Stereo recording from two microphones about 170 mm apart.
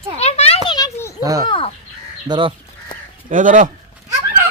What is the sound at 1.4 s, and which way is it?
Crow, 30° left (ahead or behind).